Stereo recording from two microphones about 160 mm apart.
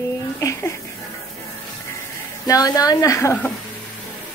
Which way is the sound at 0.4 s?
20° left (ahead or behind).